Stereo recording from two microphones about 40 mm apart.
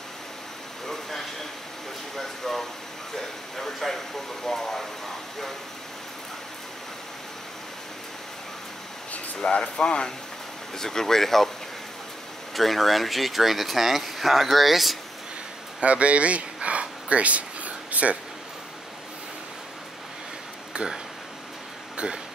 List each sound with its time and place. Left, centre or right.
2.1 s speech: centre
9.6 s speech: left
12.5 s speech: centre
15.8 s speech: right
17.1 s a sound: right
21.9 s a sound: right